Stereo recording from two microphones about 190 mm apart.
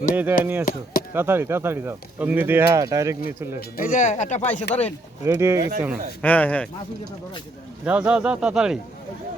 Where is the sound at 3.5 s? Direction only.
50° left (ahead or behind).